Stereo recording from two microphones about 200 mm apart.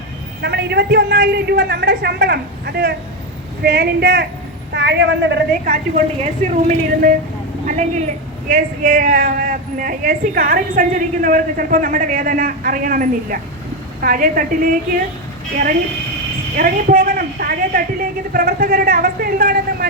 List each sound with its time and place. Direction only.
0.4 s a woman's voice: 55° right (ahead or behind)
6.4 s a woman's voice: 40° right (ahead or behind)
16.6 s a woman's voice: 45° right (ahead or behind)